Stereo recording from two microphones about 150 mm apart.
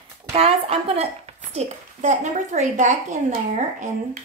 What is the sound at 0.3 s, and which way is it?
A child's voice, 40° right (ahead or behind).